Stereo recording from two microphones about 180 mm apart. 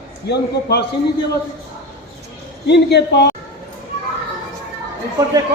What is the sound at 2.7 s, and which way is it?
Speech, 70° left (ahead or behind).